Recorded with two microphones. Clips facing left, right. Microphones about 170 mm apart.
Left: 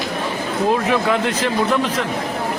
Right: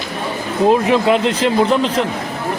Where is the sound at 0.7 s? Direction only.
20° right (ahead or behind).